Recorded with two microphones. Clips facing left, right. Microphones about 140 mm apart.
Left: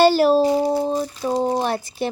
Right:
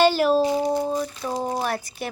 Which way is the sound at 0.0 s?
35° left (ahead or behind).